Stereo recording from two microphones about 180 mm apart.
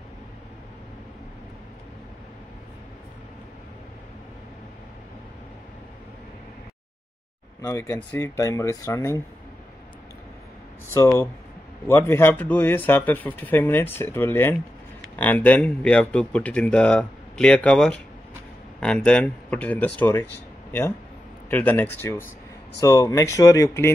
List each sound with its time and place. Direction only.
7.6 s speech: 15° left (ahead or behind)
11.0 s speech: 15° left (ahead or behind)
21.5 s speech: 10° left (ahead or behind)